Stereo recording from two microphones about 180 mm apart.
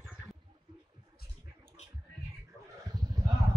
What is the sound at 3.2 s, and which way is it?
Vehicle, 20° right (ahead or behind).